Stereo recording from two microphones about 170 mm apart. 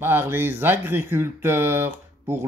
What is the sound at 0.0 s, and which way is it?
Speech, 15° right (ahead or behind).